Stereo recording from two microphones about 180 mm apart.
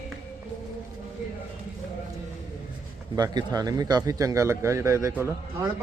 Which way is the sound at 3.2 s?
20° right (ahead or behind).